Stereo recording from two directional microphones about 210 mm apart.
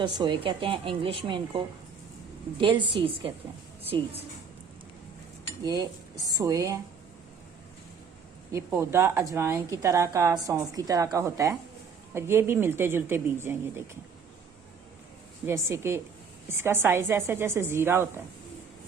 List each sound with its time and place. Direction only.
0.0 s a woman's voice: 20° right (ahead or behind)
5.6 s a woman's voice: 15° right (ahead or behind)
8.5 s a woman's voice: 10° right (ahead or behind)
15.4 s a woman's voice: 10° right (ahead or behind)